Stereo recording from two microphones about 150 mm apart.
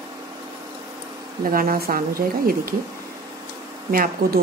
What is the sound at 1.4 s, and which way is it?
Speech, 75° right (ahead or behind).